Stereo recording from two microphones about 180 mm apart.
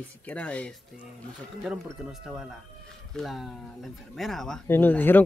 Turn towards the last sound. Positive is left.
turn(degrees=10)  # may be behind; listen again after turning